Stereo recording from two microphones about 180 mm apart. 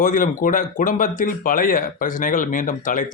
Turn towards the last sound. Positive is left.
turn(degrees=45)  # may be behind; listen again after turning